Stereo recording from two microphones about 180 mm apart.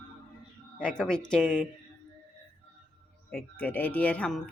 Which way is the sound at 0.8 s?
5° left (ahead or behind).